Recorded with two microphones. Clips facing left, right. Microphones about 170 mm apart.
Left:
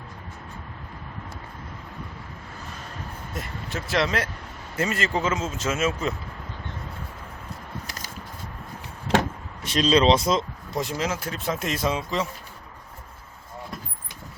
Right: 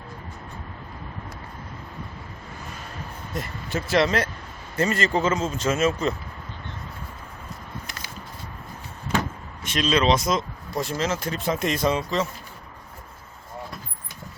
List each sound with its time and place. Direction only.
3.3 s speech: centre (ahead or behind)
7.9 s a sound: 40° left (ahead or behind)
9.6 s speech: 35° left (ahead or behind)
10.8 s speech: 15° left (ahead or behind)